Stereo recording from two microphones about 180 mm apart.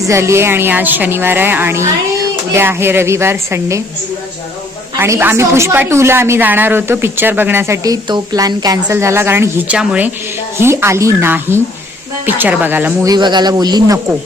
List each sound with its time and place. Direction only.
0.0 s a woman's voice: 15° right (ahead or behind)
4.9 s a woman's voice: 15° right (ahead or behind)